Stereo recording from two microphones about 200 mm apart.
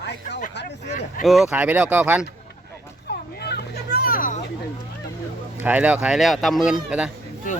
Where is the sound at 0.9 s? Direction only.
35° left (ahead or behind).